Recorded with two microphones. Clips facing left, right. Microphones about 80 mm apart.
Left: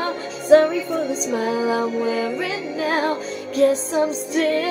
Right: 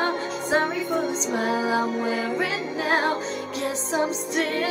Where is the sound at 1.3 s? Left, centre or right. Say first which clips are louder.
Left 2 dB; right.